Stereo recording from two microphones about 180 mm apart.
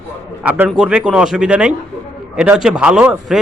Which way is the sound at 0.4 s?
5° right (ahead or behind).